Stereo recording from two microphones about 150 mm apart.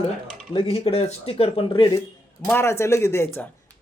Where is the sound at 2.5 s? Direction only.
15° left (ahead or behind).